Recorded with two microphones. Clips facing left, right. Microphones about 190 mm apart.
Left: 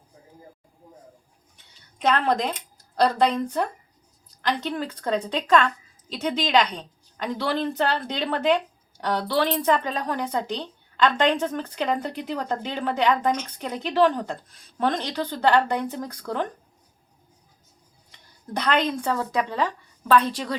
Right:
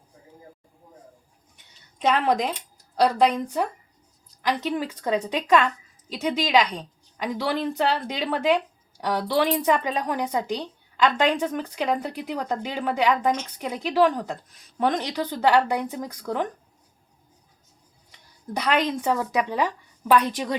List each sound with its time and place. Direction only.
2.0 s a woman's voice: 10° right (ahead or behind)
18.5 s a woman's voice: 10° right (ahead or behind)